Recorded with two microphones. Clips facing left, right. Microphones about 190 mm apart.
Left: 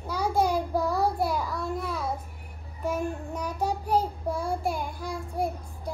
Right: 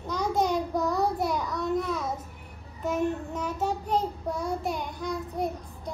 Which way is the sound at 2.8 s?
10° left (ahead or behind).